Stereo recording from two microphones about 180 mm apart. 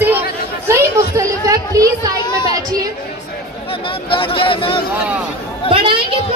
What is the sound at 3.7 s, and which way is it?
Speech, 30° left (ahead or behind).